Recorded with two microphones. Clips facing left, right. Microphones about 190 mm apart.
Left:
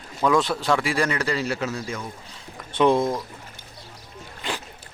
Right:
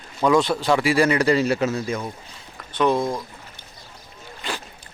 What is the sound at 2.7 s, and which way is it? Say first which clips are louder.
Speech: left 1 dB; 25° left (ahead or behind).